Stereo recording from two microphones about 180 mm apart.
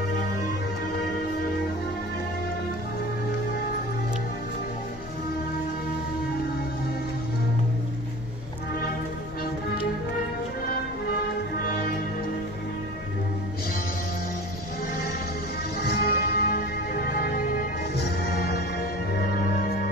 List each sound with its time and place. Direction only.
15.8 s music: 60° left (ahead or behind)